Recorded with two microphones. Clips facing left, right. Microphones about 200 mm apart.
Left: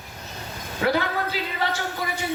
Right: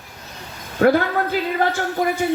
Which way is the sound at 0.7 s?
50° right (ahead or behind).